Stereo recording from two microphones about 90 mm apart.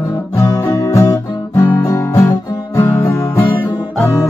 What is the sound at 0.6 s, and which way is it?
Music, 35° left (ahead or behind).